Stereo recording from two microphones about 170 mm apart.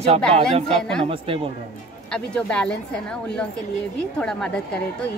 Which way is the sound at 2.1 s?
5° left (ahead or behind).